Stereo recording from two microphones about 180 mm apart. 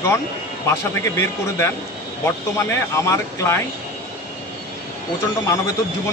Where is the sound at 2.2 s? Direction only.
15° left (ahead or behind).